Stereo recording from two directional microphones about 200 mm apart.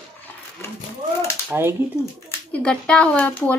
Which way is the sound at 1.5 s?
10° right (ahead or behind).